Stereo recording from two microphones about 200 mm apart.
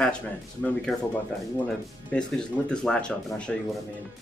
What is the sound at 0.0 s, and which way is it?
Speech, 5° left (ahead or behind).